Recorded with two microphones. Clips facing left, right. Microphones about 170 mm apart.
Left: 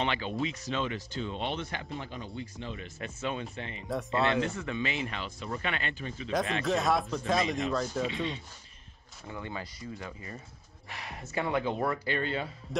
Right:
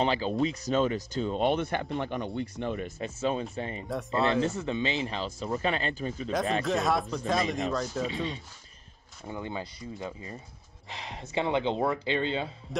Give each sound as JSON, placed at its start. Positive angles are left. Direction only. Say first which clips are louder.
{"t": 0.0, "sound": "speech", "louder": "right 5 dB", "side_deg": -35}
{"t": 3.0, "sound": "speech", "louder": "right 3 dB", "side_deg": -35}
{"t": 3.8, "sound": "speech", "louder": "even", "side_deg": 0}
{"t": 4.6, "sound": "speech", "louder": "right 3 dB", "side_deg": -30}
{"t": 6.6, "sound": "speech", "louder": "right 1 dB", "side_deg": 0}
{"t": 8.1, "sound": "speech", "louder": "right 1 dB", "side_deg": -35}
{"t": 9.3, "sound": "speech", "louder": "right 3 dB", "side_deg": -20}